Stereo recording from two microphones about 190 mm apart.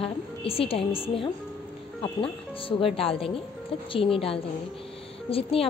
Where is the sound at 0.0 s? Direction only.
30° left (ahead or behind).